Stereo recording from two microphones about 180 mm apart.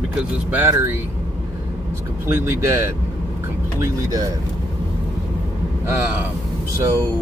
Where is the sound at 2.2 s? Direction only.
15° right (ahead or behind).